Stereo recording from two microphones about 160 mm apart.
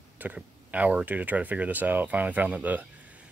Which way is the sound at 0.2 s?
10° right (ahead or behind).